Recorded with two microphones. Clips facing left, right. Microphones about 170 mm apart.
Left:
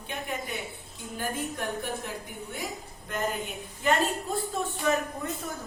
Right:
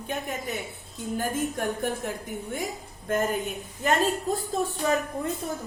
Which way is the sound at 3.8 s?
40° right (ahead or behind).